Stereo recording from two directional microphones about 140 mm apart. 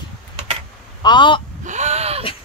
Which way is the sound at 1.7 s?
55° right (ahead or behind).